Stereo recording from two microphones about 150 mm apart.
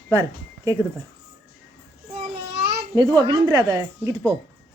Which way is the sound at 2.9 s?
25° right (ahead or behind).